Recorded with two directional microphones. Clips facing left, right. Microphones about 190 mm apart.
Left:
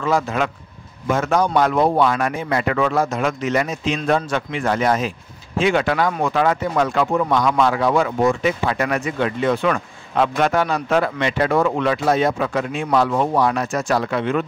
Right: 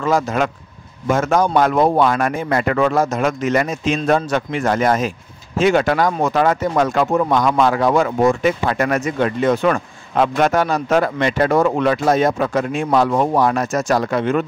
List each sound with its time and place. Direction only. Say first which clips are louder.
0.0 s speech: right 2 dB; 45° right (ahead or behind)